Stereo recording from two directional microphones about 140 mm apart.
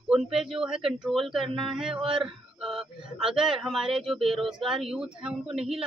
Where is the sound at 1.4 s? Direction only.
40° right (ahead or behind).